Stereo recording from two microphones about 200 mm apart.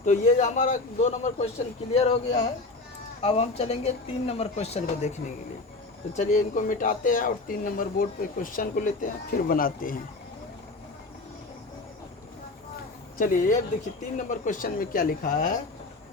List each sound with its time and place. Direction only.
0.0 s speech: 35° left (ahead or behind)
13.1 s speech: 40° left (ahead or behind)